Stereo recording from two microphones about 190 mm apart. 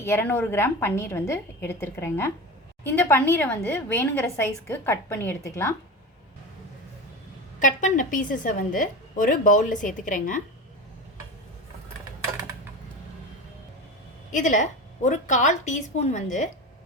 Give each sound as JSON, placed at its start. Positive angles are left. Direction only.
{"t": 0.0, "sound": "a woman's voice", "side_deg": 10}
{"t": 7.6, "sound": "a woman's voice", "side_deg": 40}
{"t": 14.3, "sound": "a woman's voice", "side_deg": 40}